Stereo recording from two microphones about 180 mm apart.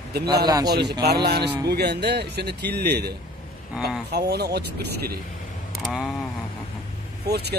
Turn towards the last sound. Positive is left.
turn(degrees=-65)  # may be behind; listen again after turning